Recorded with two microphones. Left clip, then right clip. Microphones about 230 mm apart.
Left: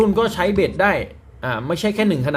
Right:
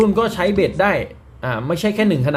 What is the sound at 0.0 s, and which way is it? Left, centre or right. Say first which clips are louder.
Speech: right 1 dB; centre.